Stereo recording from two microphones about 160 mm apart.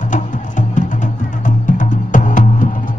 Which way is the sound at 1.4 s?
55° left (ahead or behind).